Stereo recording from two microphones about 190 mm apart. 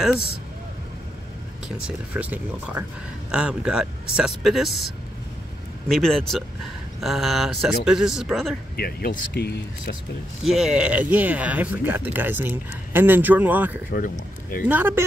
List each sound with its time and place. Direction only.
1.9 s speech: 5° right (ahead or behind)
8.7 s speech: 55° left (ahead or behind)
10.4 s speech: centre (ahead or behind)
13.9 s speech: 45° left (ahead or behind)
14.7 s speech: 10° right (ahead or behind)